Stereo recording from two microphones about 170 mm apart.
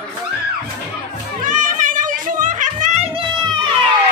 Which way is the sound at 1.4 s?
50° right (ahead or behind).